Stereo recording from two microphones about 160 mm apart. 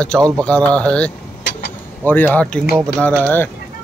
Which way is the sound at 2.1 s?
10° left (ahead or behind).